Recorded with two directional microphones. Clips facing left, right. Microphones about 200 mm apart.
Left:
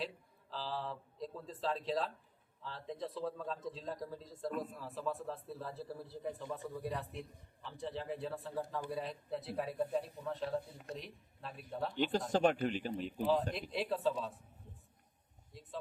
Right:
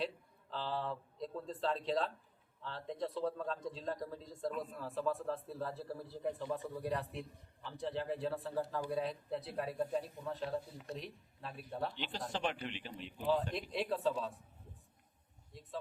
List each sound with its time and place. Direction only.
0.5 s a man's voice: centre (ahead or behind)
12.3 s a man's voice: 45° left (ahead or behind)
13.5 s a man's voice: centre (ahead or behind)
15.5 s a man's voice: centre (ahead or behind)